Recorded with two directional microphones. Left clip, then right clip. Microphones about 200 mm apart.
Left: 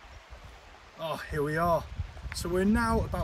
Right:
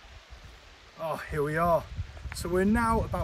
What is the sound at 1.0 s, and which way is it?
Speech, 10° right (ahead or behind).